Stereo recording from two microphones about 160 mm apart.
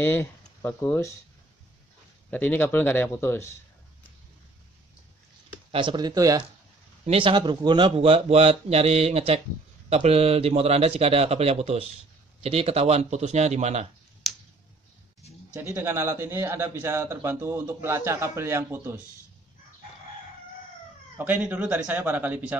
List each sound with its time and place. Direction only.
0.0 s speech: 15° left (ahead or behind)
2.3 s speech: 10° left (ahead or behind)
5.7 s speech: 30° right (ahead or behind)
7.1 s a man's voice: 35° right (ahead or behind)
15.5 s a man's voice: 20° right (ahead or behind)
21.2 s a man's voice: 10° right (ahead or behind)